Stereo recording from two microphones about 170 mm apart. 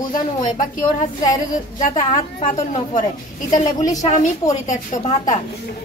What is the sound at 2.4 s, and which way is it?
Speech, 45° left (ahead or behind).